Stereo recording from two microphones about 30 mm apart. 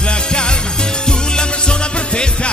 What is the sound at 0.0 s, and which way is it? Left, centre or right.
Music, left.